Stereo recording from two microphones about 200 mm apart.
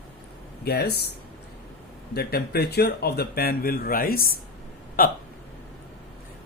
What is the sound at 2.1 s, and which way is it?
Speech, 50° left (ahead or behind).